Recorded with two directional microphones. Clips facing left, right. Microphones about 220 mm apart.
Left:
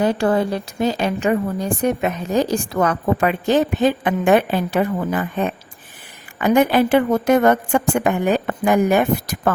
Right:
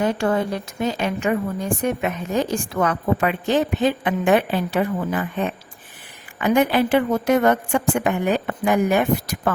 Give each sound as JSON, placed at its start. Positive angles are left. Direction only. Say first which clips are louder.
{"t": 0.0, "sound": "a woman's voice", "louder": "left 3 dB", "side_deg": 35}